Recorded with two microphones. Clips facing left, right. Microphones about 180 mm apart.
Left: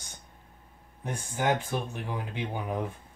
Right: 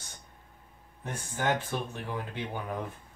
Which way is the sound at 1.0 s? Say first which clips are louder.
Left 2 dB; 15° left (ahead or behind).